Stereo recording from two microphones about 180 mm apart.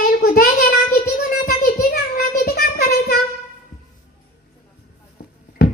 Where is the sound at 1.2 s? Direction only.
55° left (ahead or behind).